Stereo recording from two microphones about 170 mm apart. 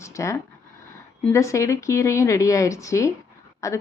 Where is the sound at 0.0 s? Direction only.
20° left (ahead or behind).